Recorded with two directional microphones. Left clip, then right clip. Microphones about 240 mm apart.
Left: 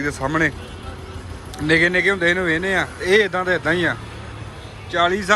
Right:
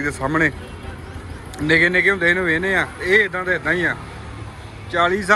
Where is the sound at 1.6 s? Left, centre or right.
Centre.